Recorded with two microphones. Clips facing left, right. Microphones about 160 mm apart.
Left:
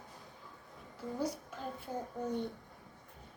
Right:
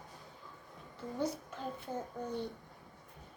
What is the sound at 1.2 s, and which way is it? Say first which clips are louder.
Speech: right 2 dB; 10° left (ahead or behind).